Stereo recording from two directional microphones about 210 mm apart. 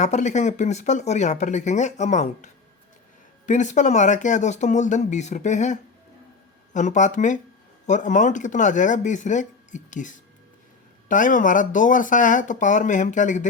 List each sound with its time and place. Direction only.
0.0 s speech: 35° left (ahead or behind)